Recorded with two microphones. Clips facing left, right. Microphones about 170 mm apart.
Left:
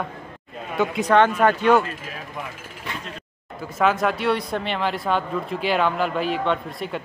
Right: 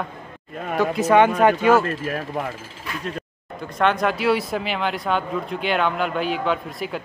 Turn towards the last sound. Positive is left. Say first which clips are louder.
# even
turn(degrees=0)  # may be behind; listen again after turning